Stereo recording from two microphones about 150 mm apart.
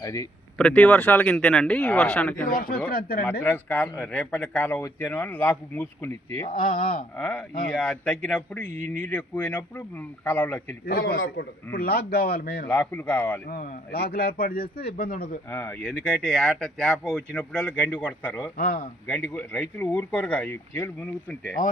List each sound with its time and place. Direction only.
0.0 s speech: 20° left (ahead or behind)
0.6 s speech: 5° left (ahead or behind)
2.5 s speech: 70° left (ahead or behind)
3.4 s speech: 10° left (ahead or behind)
6.6 s speech: 70° left (ahead or behind)
7.2 s speech: 10° left (ahead or behind)
10.8 s a man's voice: 90° left
12.8 s speech: 15° left (ahead or behind)
13.5 s speech: 80° left
15.5 s speech: 15° left (ahead or behind)
16.2 s speech: 5° left (ahead or behind)
18.5 s speech: 80° left
19.2 s speech: 15° left (ahead or behind)